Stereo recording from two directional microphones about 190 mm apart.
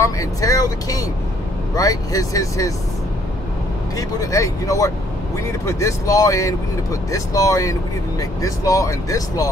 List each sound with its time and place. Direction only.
0.0 s speech: 15° left (ahead or behind)
4.2 s speech: 15° left (ahead or behind)